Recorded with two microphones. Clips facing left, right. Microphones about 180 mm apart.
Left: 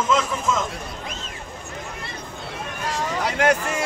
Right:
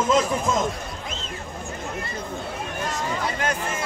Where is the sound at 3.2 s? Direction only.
70° left (ahead or behind).